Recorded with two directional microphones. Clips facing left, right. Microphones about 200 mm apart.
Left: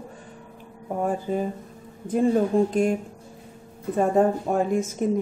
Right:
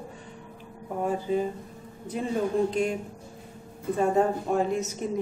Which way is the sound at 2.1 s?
50° left (ahead or behind).